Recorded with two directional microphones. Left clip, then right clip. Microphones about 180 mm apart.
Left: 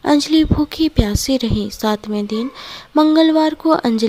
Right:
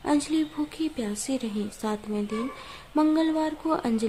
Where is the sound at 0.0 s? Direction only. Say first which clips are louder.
Left 11 dB; 40° left (ahead or behind).